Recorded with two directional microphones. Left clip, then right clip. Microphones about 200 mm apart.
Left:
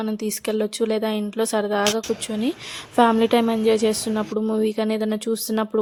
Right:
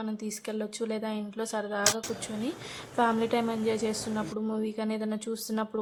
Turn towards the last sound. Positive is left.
turn(degrees=40)  # may be behind; listen again after turning